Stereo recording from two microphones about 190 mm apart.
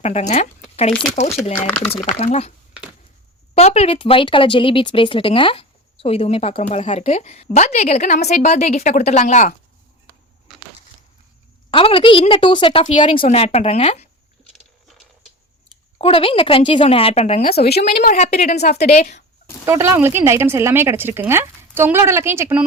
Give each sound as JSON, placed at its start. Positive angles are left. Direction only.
{"t": 0.0, "sound": "speech", "side_deg": 35}
{"t": 2.0, "sound": "speech", "side_deg": 35}
{"t": 3.5, "sound": "speech", "side_deg": 35}
{"t": 11.7, "sound": "a woman's voice", "side_deg": 30}
{"t": 14.5, "sound": "a sound", "side_deg": 0}
{"t": 16.0, "sound": "a woman's voice", "side_deg": 30}
{"t": 17.4, "sound": "a woman's voice", "side_deg": 55}
{"t": 19.6, "sound": "speech", "side_deg": -15}